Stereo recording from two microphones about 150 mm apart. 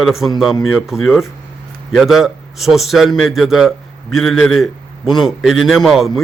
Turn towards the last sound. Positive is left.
turn(degrees=0)  # may be behind; listen again after turning